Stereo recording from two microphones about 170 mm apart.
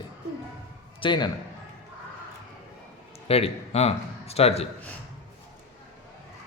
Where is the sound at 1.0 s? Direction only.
25° left (ahead or behind).